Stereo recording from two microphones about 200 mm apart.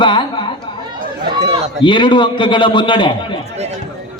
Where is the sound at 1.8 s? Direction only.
25° left (ahead or behind).